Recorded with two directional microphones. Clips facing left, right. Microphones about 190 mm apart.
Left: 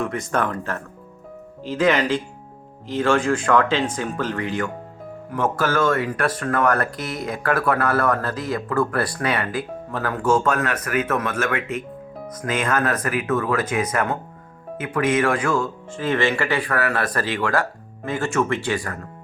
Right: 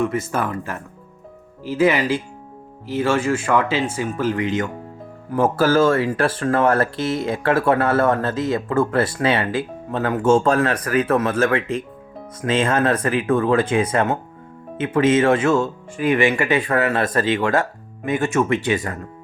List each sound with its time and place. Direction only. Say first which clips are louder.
0.0 s speech: right 2 dB; 5° right (ahead or behind)
4.4 s speech: right 3 dB; 20° right (ahead or behind)
5.3 s speech: right 5 dB; 30° right (ahead or behind)
15.9 s speech: right 4 dB; 15° right (ahead or behind)